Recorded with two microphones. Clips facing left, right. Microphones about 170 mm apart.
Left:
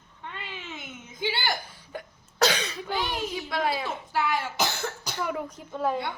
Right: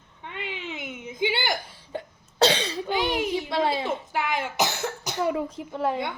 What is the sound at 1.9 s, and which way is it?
Cough, 30° right (ahead or behind).